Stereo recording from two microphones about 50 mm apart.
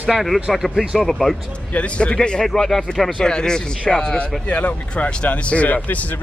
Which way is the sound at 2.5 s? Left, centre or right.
Centre.